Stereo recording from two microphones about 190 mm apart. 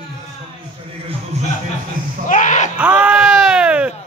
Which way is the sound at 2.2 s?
40° left (ahead or behind).